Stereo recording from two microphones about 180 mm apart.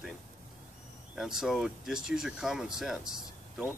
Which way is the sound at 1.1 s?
Centre (ahead or behind).